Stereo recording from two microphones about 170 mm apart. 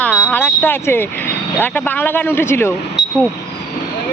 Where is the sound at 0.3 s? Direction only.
10° left (ahead or behind).